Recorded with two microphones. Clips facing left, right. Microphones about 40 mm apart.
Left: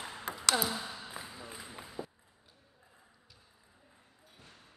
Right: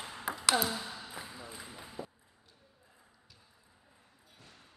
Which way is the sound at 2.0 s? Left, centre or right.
Centre.